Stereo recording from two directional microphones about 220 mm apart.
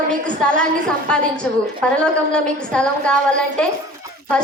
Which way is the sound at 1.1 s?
5° left (ahead or behind).